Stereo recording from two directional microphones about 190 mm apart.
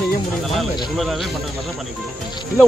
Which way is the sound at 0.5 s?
Centre (ahead or behind).